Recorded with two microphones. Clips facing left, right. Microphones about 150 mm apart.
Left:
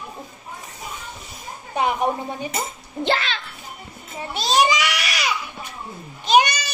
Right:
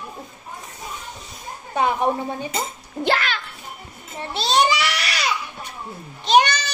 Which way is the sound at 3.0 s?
25° left (ahead or behind).